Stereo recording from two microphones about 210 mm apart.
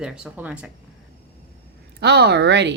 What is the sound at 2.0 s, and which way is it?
Speech, 50° right (ahead or behind).